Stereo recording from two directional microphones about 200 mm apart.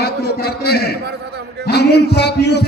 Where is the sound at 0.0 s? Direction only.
50° left (ahead or behind).